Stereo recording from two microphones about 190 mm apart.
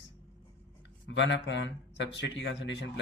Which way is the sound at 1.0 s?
70° left (ahead or behind).